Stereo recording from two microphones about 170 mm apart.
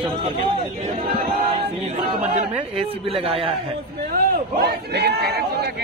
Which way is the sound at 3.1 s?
35° right (ahead or behind).